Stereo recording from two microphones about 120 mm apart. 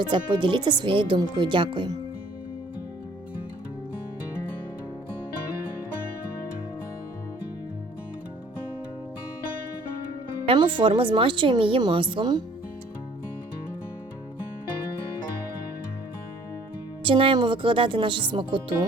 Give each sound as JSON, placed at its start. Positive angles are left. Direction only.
{"t": 0.0, "sound": "speech", "side_deg": -40}
{"t": 10.4, "sound": "speech", "side_deg": -45}
{"t": 17.0, "sound": "speech", "side_deg": -45}